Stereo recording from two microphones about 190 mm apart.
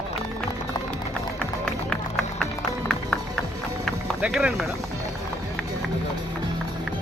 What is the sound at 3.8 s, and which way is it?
Run, centre (ahead or behind).